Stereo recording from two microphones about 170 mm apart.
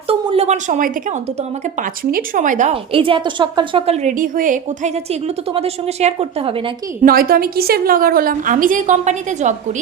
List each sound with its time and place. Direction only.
0.1 s a sound: 35° right (ahead or behind)
2.0 s speech: 55° right (ahead or behind)
2.9 s a woman's voice: 30° right (ahead or behind); by 4.9 s 50° right (ahead or behind)
5.5 s a woman's voice: 40° right (ahead or behind)
7.0 s a woman's voice: 60° right (ahead or behind)